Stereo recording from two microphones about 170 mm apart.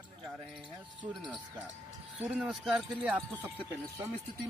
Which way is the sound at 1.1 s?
Centre (ahead or behind).